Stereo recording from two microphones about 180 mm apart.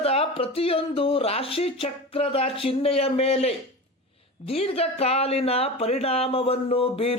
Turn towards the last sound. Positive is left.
turn(degrees=30)  # may be behind; listen again after turning